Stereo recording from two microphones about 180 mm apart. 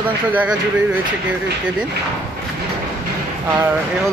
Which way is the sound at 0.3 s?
10° right (ahead or behind).